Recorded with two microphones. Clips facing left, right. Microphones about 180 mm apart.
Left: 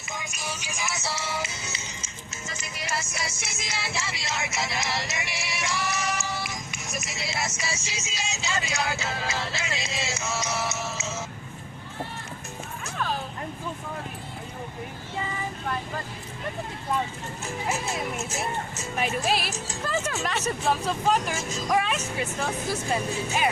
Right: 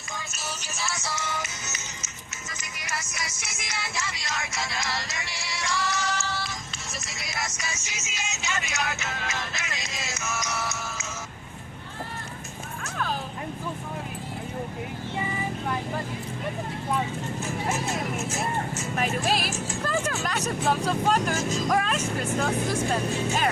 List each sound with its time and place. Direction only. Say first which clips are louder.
0.2 s music: left 1 dB; 10° left (ahead or behind)
6.9 s vehicle: left 4 dB; 20° left (ahead or behind)
15.2 s child singing: right 1 dB; 15° right (ahead or behind)
18.9 s speech: even; centre (ahead or behind)
19.8 s vehicle: even; centre (ahead or behind)
20.2 s speech: even; centre (ahead or behind)